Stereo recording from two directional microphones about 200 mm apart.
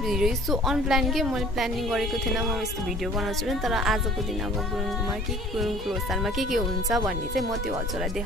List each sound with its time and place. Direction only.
0.1 s a woman's voice: centre (ahead or behind)
5.6 s a woman's voice: centre (ahead or behind)